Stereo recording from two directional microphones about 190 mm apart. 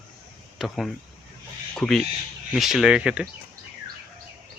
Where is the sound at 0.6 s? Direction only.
Centre (ahead or behind).